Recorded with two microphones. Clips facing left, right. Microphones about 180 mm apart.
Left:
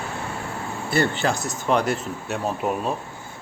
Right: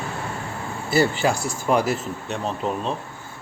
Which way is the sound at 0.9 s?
5° right (ahead or behind).